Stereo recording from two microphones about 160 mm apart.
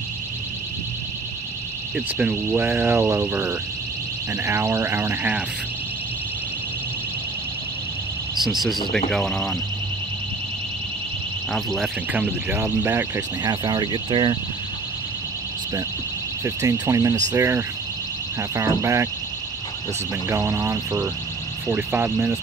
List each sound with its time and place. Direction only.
2.0 s speech: 10° right (ahead or behind)
8.4 s speech: centre (ahead or behind)
11.5 s speech: centre (ahead or behind)
12.1 s speech: 10° right (ahead or behind)
13.4 s speech: 25° right (ahead or behind)
16.4 s speech: 20° right (ahead or behind)
20.2 s speech: 15° right (ahead or behind)